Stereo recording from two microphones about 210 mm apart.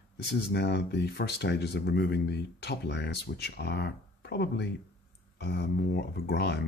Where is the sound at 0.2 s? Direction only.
50° left (ahead or behind).